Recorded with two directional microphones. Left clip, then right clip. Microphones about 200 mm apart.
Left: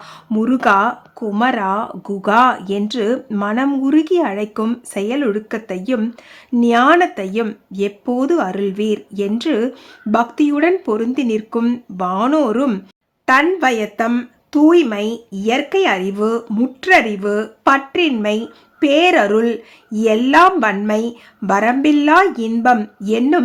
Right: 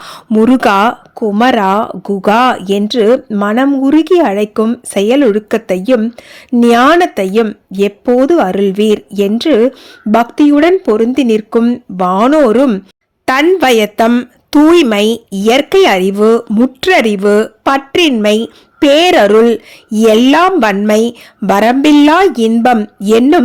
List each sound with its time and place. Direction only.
0.3 s speech: 35° right (ahead or behind)
16.9 s speech: 45° right (ahead or behind)